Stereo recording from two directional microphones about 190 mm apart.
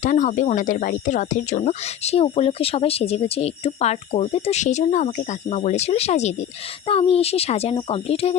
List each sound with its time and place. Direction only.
0.0 s speech: 40° left (ahead or behind)